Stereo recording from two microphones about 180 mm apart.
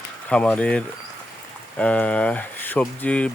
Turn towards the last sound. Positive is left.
turn(degrees=5)  # may be behind; listen again after turning